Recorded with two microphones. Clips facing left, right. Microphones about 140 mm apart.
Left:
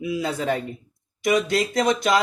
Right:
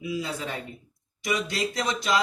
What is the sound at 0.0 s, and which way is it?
Speech, 60° left (ahead or behind).